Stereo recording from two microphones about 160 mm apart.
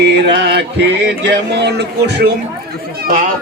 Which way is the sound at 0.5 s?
90° right.